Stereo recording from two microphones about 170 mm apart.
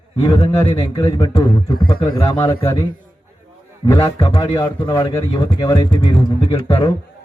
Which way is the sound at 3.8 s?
30° left (ahead or behind).